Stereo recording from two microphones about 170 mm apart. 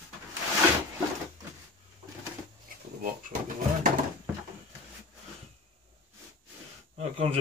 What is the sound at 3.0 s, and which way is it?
Pigeon, 55° right (ahead or behind).